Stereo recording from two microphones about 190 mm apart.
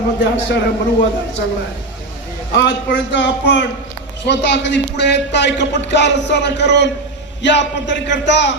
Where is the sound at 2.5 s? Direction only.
70° left (ahead or behind).